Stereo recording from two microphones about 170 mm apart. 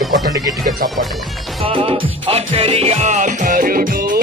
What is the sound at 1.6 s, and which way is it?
Music, 35° right (ahead or behind).